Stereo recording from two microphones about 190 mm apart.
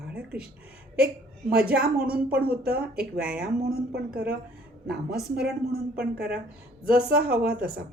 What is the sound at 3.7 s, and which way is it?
Speech, 55° right (ahead or behind).